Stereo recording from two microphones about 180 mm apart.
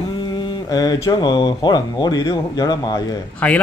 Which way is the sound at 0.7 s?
20° left (ahead or behind).